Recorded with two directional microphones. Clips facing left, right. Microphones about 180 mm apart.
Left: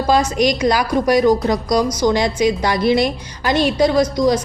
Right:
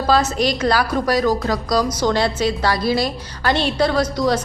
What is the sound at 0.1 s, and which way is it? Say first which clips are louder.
A woman's voice: left 2 dB; 15° left (ahead or behind).